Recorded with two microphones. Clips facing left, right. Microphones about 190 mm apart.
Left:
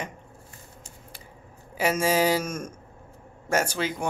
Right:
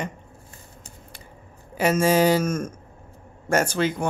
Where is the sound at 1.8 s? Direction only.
5° left (ahead or behind).